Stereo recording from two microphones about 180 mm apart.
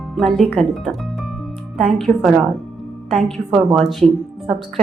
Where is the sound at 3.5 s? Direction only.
25° right (ahead or behind).